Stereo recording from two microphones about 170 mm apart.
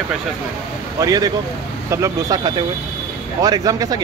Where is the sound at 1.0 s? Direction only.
20° right (ahead or behind).